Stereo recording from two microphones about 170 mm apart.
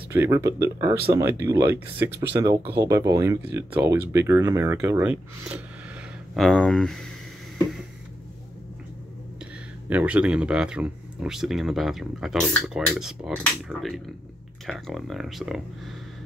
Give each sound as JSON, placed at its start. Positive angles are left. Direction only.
{"t": 0.1, "sound": "speech", "side_deg": -15}
{"t": 6.3, "sound": "speech", "side_deg": 5}
{"t": 9.8, "sound": "speech", "side_deg": -10}